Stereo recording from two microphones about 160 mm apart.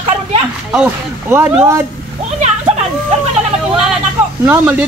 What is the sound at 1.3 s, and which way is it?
Speech, 15° right (ahead or behind).